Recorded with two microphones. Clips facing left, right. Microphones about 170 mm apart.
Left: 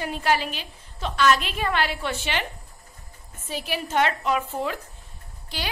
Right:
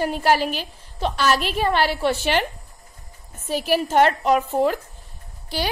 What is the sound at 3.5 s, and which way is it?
A woman's voice, 40° right (ahead or behind).